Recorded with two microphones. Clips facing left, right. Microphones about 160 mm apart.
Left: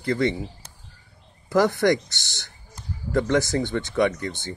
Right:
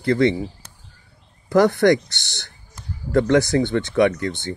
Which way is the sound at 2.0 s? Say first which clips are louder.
Right 2 dB; 65° right (ahead or behind).